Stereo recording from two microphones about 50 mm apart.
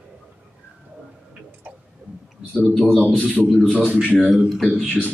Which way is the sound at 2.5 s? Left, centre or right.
Left.